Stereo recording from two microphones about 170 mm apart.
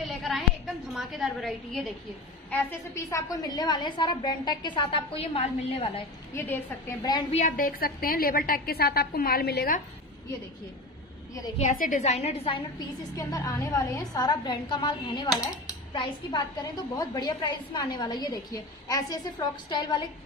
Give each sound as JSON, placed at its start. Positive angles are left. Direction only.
{"t": 0.9, "sound": "a woman's voice", "side_deg": 0}
{"t": 2.5, "sound": "a woman's voice", "side_deg": 15}
{"t": 6.3, "sound": "a woman's voice", "side_deg": 15}
{"t": 7.3, "sound": "a woman's voice", "side_deg": 50}
{"t": 11.5, "sound": "a woman's voice", "side_deg": 45}